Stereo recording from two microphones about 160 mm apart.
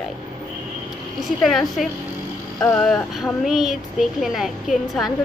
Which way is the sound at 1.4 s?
Centre (ahead or behind).